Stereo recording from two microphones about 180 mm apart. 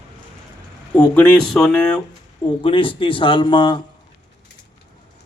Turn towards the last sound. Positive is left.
turn(degrees=25)  # may be behind; listen again after turning